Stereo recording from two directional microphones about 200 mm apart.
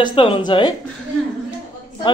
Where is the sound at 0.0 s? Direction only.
25° left (ahead or behind).